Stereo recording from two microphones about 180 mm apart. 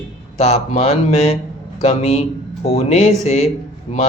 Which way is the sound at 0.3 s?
35° left (ahead or behind).